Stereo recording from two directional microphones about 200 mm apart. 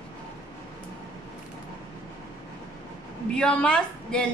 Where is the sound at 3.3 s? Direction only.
5° left (ahead or behind).